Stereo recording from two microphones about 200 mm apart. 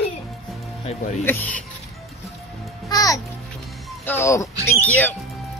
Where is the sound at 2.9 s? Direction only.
15° left (ahead or behind).